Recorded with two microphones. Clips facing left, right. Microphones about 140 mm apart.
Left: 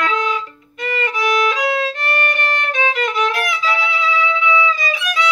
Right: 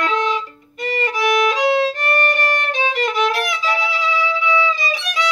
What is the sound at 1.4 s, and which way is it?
Violin, 25° right (ahead or behind).